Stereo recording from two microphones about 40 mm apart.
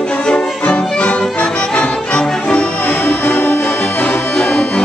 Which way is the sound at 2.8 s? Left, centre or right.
Left.